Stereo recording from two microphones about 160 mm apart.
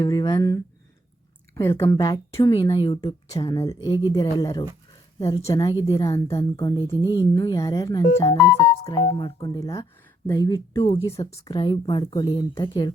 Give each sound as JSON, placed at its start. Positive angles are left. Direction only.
{"t": 0.0, "sound": "speech", "side_deg": 25}
{"t": 6.2, "sound": "a woman's voice", "side_deg": 35}
{"t": 8.8, "sound": "a woman's voice", "side_deg": 40}